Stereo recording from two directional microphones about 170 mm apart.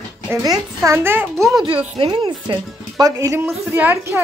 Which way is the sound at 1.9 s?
30° right (ahead or behind).